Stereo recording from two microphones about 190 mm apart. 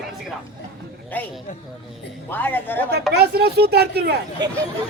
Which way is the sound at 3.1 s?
60° right (ahead or behind).